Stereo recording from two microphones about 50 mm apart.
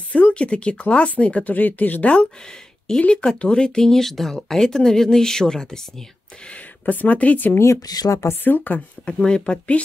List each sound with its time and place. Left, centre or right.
0.3 s speech: left
3.0 s speech: centre
6.5 s speech: left
7.5 s speech: left
8.3 s speech: left
9.0 s speech: centre